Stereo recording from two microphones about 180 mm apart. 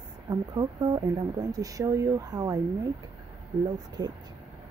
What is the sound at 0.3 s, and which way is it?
Speech, 20° right (ahead or behind).